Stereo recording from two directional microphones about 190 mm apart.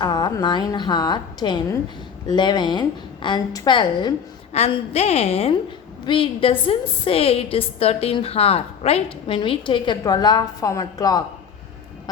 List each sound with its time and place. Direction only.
0.0 s a woman's voice: 20° left (ahead or behind)
4.5 s a woman's voice: 35° left (ahead or behind); by 11.2 s 20° left (ahead or behind)